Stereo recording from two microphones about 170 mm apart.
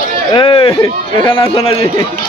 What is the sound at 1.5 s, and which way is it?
Speech, 35° left (ahead or behind).